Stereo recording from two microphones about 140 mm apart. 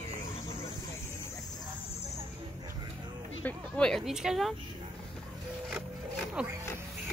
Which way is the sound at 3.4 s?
5° left (ahead or behind).